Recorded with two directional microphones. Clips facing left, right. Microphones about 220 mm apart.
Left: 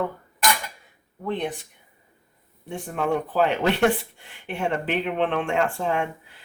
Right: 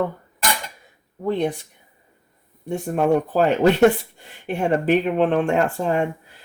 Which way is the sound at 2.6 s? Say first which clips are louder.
Right 6 dB; 45° right (ahead or behind).